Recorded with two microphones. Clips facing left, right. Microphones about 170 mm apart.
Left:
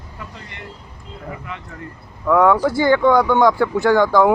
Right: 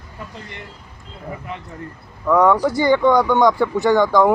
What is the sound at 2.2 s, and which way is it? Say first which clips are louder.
Speech: even; centre (ahead or behind).